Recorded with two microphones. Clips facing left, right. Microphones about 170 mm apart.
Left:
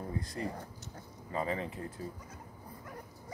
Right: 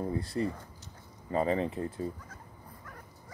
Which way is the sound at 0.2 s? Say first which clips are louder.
Right 6 dB; 30° right (ahead or behind).